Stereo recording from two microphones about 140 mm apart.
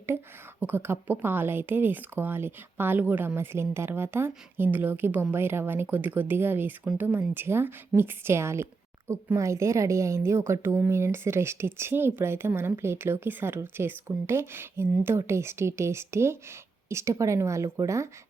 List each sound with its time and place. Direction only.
0.6 s a woman's voice: 15° right (ahead or behind)